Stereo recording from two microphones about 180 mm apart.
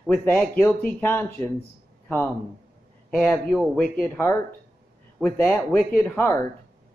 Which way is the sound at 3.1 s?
10° left (ahead or behind).